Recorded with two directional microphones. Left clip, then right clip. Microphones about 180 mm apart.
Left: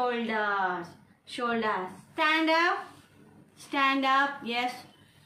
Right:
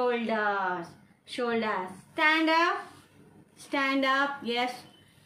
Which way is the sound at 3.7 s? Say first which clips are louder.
Left 1 dB; 25° right (ahead or behind).